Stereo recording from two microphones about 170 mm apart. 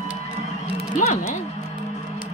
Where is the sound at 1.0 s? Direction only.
40° left (ahead or behind).